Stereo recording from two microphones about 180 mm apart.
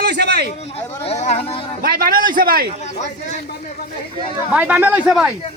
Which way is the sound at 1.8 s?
55° right (ahead or behind).